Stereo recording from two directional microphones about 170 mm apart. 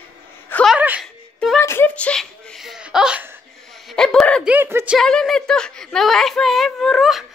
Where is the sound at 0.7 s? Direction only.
10° right (ahead or behind).